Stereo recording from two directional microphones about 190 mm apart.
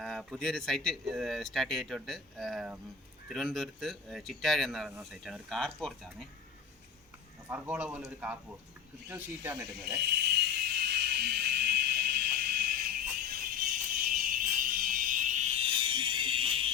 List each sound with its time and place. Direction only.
0.0 s speech: centre (ahead or behind)
7.4 s a man's voice: 10° right (ahead or behind)
10.0 s a sound: 60° right (ahead or behind); by 16.6 s 30° right (ahead or behind)